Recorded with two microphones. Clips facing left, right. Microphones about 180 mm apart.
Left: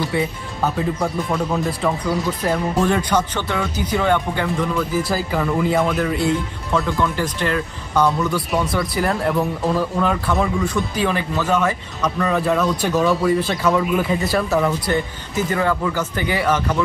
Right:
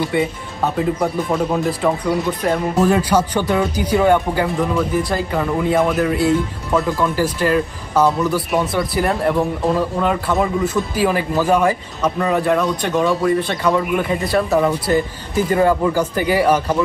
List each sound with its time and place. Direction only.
1.0 s speech: 15° right (ahead or behind)
1.7 s speech: centre (ahead or behind)
12.4 s speech: centre (ahead or behind)
15.5 s speech: 25° right (ahead or behind)
15.9 s speech: 10° right (ahead or behind)